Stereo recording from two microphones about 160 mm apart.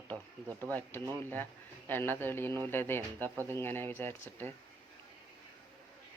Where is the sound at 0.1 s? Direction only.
20° right (ahead or behind).